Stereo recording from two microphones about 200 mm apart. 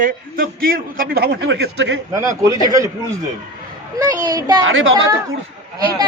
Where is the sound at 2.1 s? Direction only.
15° right (ahead or behind).